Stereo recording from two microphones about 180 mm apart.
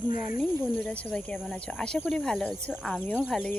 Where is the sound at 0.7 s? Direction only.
5° left (ahead or behind).